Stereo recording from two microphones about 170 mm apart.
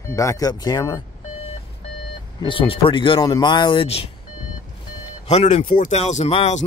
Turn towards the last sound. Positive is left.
turn(degrees=40)  # may be behind; listen again after turning